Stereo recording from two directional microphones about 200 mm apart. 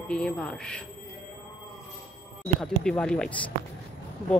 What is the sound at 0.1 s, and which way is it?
Speech, 5° left (ahead or behind).